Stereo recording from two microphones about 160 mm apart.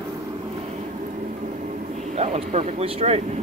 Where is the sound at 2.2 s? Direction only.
40° right (ahead or behind).